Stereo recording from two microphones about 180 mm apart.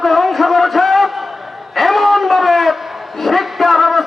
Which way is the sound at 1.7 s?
Centre (ahead or behind).